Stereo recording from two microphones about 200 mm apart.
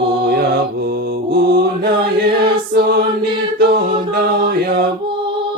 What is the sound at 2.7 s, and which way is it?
Music, 50° right (ahead or behind).